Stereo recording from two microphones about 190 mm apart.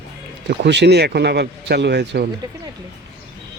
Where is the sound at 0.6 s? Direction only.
65° right (ahead or behind).